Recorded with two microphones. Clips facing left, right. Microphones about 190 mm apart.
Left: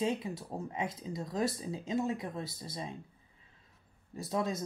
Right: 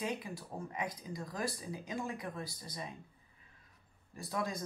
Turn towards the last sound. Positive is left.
turn(degrees=25)  # may be behind; listen again after turning